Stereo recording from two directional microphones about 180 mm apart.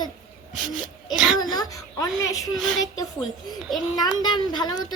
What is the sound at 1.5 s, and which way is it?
Speech, 20° left (ahead or behind).